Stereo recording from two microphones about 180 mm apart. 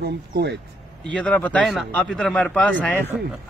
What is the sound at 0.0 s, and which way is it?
Speech, 65° right (ahead or behind).